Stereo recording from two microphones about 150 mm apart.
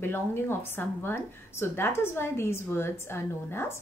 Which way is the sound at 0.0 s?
15° left (ahead or behind).